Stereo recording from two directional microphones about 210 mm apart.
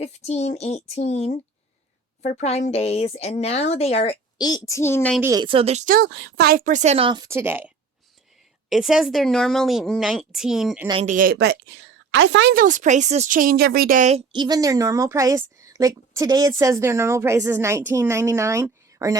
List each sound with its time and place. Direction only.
0.0 s speech: 30° left (ahead or behind)
4.4 s a woman's voice: 20° left (ahead or behind)
5.2 s speech: 20° right (ahead or behind)
8.7 s a woman's voice: centre (ahead or behind)
11.0 s a woman's voice: 40° right (ahead or behind); by 12.6 s 55° right (ahead or behind)
12.6 s a woman's voice: 35° right (ahead or behind); by 19.1 s 15° right (ahead or behind)